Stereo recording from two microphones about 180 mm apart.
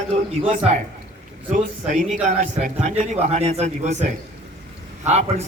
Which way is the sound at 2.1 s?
40° right (ahead or behind).